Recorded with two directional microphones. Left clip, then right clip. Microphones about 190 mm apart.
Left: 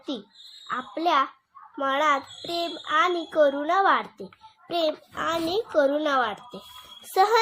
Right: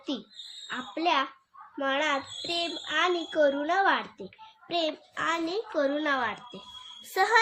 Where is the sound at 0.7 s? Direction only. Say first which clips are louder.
Left 4 dB; centre (ahead or behind).